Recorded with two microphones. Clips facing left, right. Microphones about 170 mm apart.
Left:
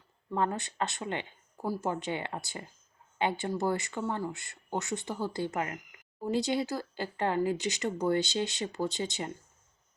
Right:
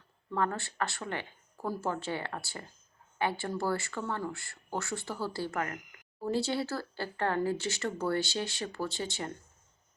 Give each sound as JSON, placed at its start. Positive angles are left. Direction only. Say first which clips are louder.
{"t": 0.3, "sound": "speech", "louder": "left 1 dB", "side_deg": 20}